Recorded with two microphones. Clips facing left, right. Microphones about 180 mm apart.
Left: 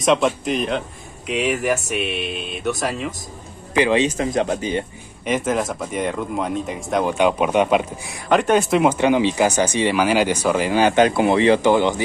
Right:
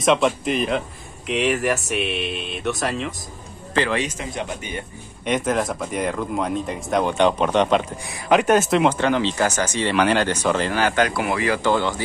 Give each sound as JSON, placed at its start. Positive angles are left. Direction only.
{"t": 0.0, "sound": "speech", "side_deg": 0}
{"t": 3.7, "sound": "speech", "side_deg": 15}
{"t": 4.4, "sound": "speech", "side_deg": 35}
{"t": 5.2, "sound": "speech", "side_deg": 5}
{"t": 8.3, "sound": "speech", "side_deg": -5}